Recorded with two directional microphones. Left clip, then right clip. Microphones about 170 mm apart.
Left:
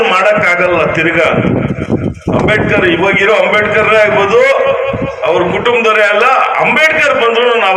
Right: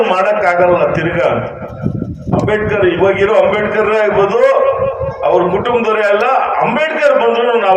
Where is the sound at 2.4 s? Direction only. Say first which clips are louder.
Left 3 dB; 35° right (ahead or behind).